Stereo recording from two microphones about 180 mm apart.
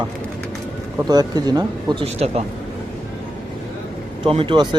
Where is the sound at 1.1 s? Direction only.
20° right (ahead or behind).